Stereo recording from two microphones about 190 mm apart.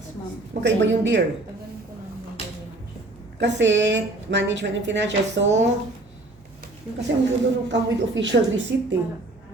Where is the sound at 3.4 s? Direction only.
70° right (ahead or behind).